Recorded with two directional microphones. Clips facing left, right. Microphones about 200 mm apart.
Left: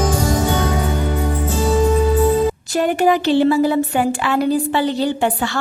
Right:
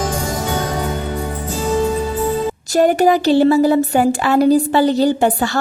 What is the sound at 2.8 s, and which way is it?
Speech, 40° right (ahead or behind).